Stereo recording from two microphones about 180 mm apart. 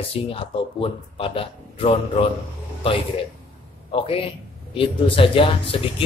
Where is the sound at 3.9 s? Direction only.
30° left (ahead or behind).